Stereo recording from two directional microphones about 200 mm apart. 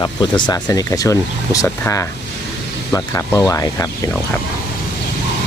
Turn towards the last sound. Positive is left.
turn(degrees=15)  # may be behind; listen again after turning